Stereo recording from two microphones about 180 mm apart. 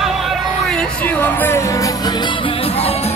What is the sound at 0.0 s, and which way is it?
Music, centre (ahead or behind).